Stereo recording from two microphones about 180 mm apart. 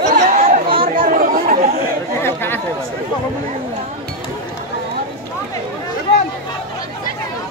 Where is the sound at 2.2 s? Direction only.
10° left (ahead or behind).